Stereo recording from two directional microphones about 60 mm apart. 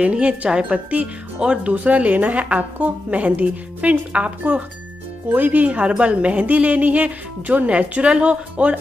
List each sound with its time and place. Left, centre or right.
0.0 s speech: centre
1.7 s a woman's voice: right